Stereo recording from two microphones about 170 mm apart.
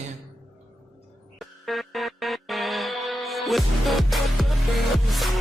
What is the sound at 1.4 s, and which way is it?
Music, centre (ahead or behind).